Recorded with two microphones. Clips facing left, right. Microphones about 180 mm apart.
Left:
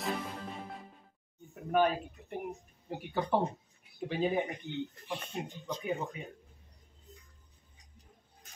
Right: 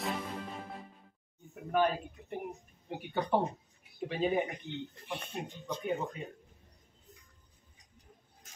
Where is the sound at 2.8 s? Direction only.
Centre (ahead or behind).